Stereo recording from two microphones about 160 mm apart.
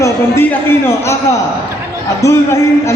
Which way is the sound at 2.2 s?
20° left (ahead or behind).